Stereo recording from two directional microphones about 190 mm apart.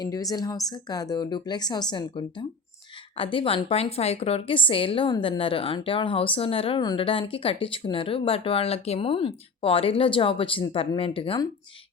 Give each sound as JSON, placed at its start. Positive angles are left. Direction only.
{"t": 0.0, "sound": "a woman's voice", "side_deg": 20}